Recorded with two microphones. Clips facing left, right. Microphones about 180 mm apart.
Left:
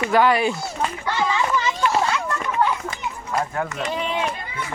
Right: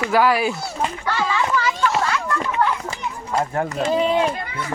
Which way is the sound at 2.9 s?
35° right (ahead or behind).